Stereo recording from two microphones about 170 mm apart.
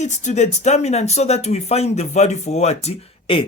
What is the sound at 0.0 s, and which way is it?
Speech, 45° left (ahead or behind).